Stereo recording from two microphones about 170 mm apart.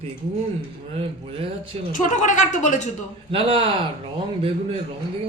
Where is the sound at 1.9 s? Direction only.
50° left (ahead or behind).